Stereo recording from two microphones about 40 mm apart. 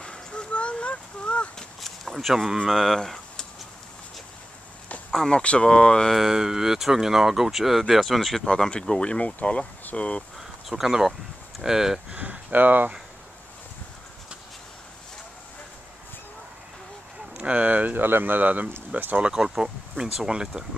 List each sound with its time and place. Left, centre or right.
0.0 s a sound: left
1.8 s a sound: centre
2.6 s speech: centre
5.3 s speech: left
6.1 s speech: centre
8.6 s speech: centre
9.0 s speech: left
10.7 s speech: centre
12.2 s a sound: right
12.5 s speech: right
17.4 s speech: right
18.0 s speech: right
19.4 s speech: centre